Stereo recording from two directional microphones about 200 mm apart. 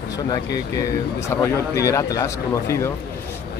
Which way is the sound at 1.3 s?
15° left (ahead or behind).